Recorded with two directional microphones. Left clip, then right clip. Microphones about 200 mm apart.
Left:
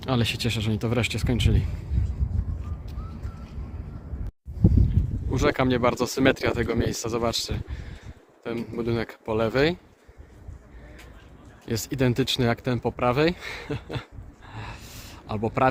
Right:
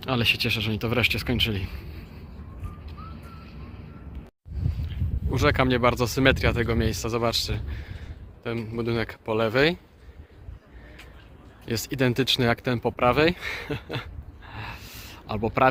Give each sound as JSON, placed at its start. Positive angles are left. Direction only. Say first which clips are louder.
{"t": 0.0, "sound": "speech", "louder": "right 3 dB", "side_deg": 10}
{"t": 5.3, "sound": "speech", "louder": "right 1 dB", "side_deg": 5}
{"t": 11.6, "sound": "speech", "louder": "even", "side_deg": 5}